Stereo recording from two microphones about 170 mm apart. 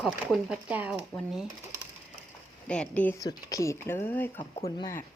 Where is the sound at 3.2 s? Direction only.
20° left (ahead or behind).